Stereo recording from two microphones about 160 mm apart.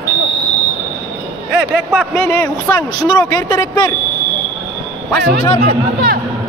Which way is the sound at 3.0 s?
25° left (ahead or behind).